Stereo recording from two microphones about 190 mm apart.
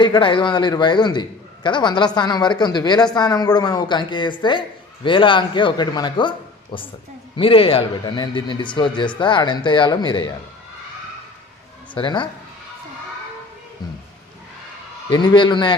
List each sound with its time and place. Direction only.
0.0 s a man's voice: 25° left (ahead or behind)
11.9 s a man's voice: 25° left (ahead or behind)
15.1 s a man's voice: 20° left (ahead or behind)